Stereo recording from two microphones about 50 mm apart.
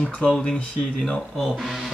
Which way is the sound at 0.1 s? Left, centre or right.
Centre.